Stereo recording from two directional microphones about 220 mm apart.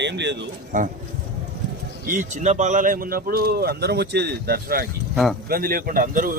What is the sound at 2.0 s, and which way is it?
Speech, 35° right (ahead or behind).